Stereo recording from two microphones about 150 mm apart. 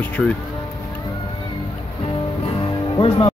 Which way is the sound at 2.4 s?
35° left (ahead or behind).